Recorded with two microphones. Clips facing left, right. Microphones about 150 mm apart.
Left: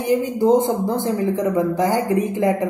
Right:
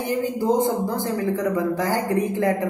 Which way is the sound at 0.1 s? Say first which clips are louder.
Left 6 dB; 20° left (ahead or behind).